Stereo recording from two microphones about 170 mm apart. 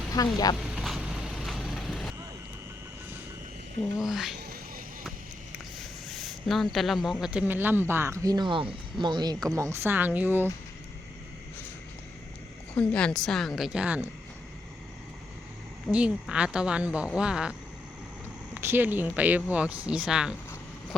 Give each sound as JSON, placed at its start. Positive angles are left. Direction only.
{"t": 0.1, "sound": "speech", "side_deg": 20}
{"t": 0.6, "sound": "vehicle", "side_deg": -5}
{"t": 4.0, "sound": "a woman's voice", "side_deg": 0}
{"t": 12.7, "sound": "a woman's voice", "side_deg": 5}
{"t": 15.9, "sound": "a woman's voice", "side_deg": -5}